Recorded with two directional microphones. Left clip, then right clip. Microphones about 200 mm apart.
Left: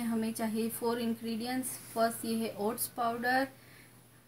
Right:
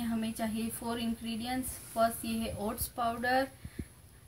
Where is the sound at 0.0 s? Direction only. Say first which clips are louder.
Left 1 dB; 5° left (ahead or behind).